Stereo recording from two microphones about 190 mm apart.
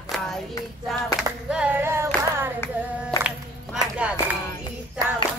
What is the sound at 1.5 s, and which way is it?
Singing, 5° right (ahead or behind).